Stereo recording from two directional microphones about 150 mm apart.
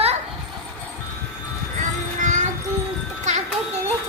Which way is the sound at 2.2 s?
55° right (ahead or behind).